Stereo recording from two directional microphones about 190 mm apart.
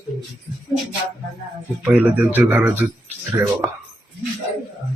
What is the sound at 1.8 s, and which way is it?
Speech, 10° right (ahead or behind).